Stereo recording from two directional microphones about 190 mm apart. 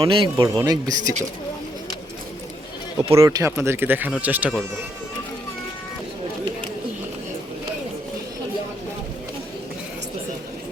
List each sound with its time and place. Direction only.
0.0 s speech: 20° right (ahead or behind)
3.0 s speech: 20° right (ahead or behind)